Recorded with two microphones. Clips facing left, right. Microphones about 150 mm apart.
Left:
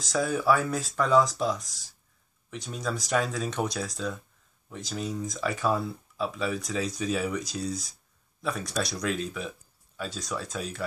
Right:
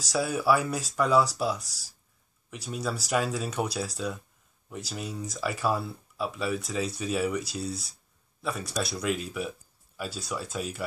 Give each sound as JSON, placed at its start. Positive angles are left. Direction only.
{"t": 0.0, "sound": "speech", "side_deg": -10}
{"t": 1.6, "sound": "speech", "side_deg": -35}
{"t": 2.5, "sound": "speech", "side_deg": -5}